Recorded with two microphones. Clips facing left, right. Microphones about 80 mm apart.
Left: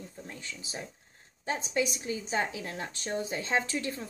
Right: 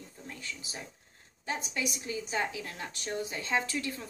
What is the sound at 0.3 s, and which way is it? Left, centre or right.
A woman's voice, left.